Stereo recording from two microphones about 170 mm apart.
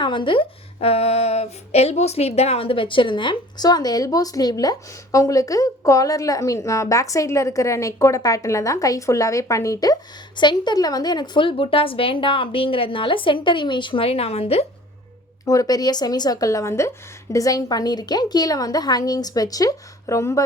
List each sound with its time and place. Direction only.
0.0 s speech: 30° left (ahead or behind)
15.4 s speech: 20° left (ahead or behind)